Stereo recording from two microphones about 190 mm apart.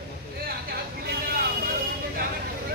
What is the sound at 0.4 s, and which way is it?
Vehicle, 55° right (ahead or behind).